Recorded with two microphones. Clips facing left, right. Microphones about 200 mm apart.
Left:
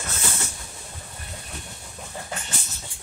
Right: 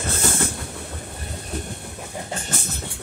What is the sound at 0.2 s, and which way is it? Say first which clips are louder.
Train: right 8 dB; 55° right (ahead or behind).